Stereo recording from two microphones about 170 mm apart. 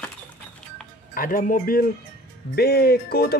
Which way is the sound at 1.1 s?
55° left (ahead or behind).